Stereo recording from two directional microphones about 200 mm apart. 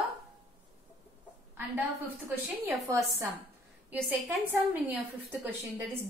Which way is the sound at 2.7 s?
15° right (ahead or behind).